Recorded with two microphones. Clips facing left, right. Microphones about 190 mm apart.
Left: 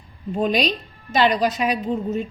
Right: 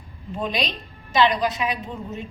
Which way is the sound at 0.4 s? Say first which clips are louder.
Left 6 dB; 45° left (ahead or behind).